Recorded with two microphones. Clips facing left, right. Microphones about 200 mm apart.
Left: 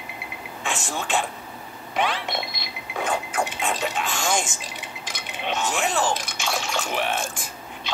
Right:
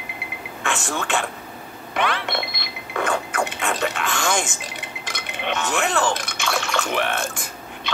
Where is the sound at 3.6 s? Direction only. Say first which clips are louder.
Right 2 dB; 65° right (ahead or behind).